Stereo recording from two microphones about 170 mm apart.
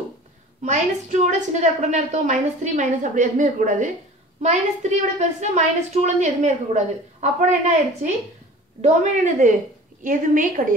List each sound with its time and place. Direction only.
0.7 s a woman's voice: 45° right (ahead or behind)